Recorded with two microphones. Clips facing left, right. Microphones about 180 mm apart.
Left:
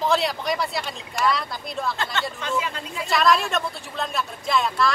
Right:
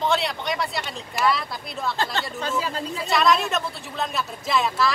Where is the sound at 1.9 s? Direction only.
30° right (ahead or behind).